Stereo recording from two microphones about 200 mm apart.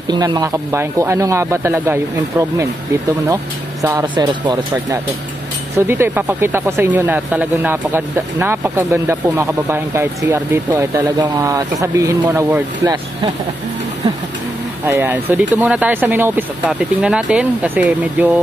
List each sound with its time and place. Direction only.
0.1 s speech: 20° right (ahead or behind)
3.8 s speech: 20° right (ahead or behind)
14.9 s speech: 10° right (ahead or behind)